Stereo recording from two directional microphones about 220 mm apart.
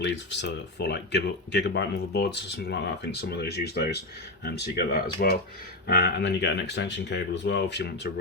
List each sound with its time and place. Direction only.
0.0 s speech: 50° left (ahead or behind)